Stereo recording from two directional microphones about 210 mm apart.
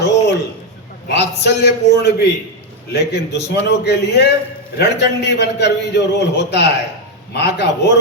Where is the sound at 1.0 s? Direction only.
55° left (ahead or behind).